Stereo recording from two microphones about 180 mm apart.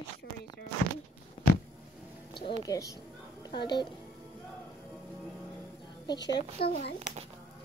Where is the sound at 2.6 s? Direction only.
20° left (ahead or behind).